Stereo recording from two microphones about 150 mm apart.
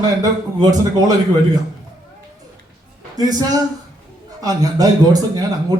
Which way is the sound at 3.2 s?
25° right (ahead or behind).